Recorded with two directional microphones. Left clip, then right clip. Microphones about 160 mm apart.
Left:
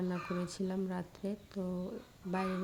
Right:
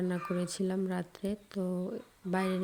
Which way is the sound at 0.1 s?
25° right (ahead or behind).